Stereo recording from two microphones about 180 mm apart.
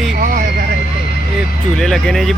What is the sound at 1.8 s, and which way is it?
Speech, centre (ahead or behind).